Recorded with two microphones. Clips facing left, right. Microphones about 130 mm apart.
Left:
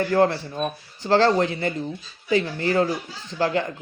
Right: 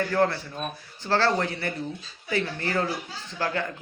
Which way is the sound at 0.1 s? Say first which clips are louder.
Left 4 dB; 20° left (ahead or behind).